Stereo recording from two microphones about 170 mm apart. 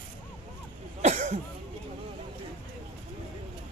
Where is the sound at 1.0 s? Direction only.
45° right (ahead or behind).